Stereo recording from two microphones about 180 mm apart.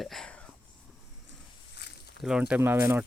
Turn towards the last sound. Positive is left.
turn(degrees=-10)  # may be behind; listen again after turning